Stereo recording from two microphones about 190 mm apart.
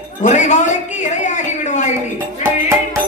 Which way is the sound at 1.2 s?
40° left (ahead or behind).